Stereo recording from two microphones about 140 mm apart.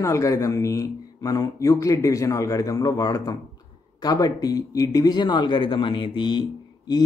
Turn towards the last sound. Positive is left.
turn(degrees=30)  # may be behind; listen again after turning